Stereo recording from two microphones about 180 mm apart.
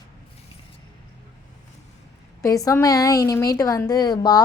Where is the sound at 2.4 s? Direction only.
20° left (ahead or behind).